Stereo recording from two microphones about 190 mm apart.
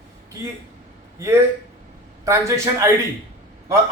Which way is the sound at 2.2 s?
15° right (ahead or behind).